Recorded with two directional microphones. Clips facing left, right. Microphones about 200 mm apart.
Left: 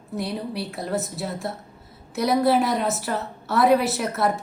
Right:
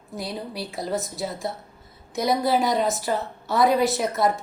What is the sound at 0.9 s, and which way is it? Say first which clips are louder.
A woman's voice: even; centre (ahead or behind).